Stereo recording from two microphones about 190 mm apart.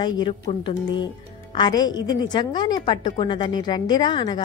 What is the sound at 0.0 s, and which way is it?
A woman's voice, 25° left (ahead or behind).